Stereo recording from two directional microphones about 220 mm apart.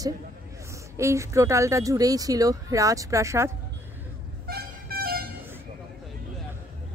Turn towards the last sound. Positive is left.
turn(degrees=-45)  # may be behind; listen again after turning